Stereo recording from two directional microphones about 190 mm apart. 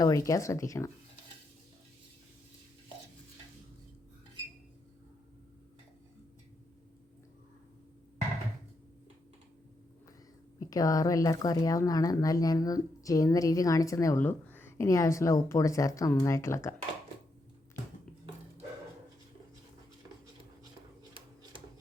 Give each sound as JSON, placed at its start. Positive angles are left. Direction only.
{"t": 0.0, "sound": "a woman's voice", "side_deg": 15}
{"t": 10.7, "sound": "a woman's voice", "side_deg": 20}
{"t": 21.0, "sound": "a sound", "side_deg": -25}